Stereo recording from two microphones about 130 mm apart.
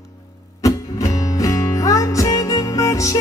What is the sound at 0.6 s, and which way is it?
Music, 25° left (ahead or behind).